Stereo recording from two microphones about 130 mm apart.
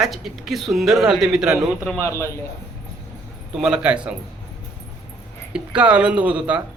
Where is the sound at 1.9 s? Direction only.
20° left (ahead or behind).